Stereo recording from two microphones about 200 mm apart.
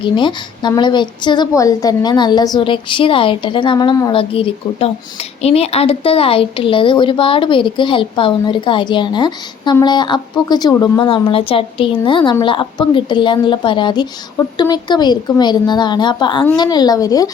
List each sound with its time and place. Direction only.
0.0 s speech: 25° left (ahead or behind)